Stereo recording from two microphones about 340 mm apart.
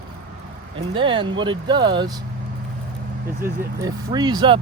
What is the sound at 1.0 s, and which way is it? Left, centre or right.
Speech, centre.